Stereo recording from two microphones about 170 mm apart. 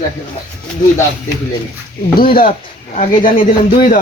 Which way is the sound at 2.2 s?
60° left (ahead or behind).